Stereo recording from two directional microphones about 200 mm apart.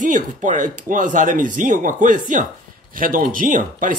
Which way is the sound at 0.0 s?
40° right (ahead or behind).